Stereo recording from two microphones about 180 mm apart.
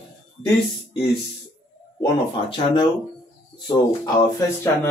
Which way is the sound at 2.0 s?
25° left (ahead or behind).